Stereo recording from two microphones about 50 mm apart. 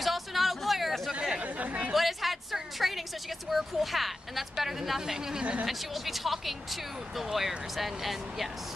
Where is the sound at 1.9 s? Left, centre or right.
Centre.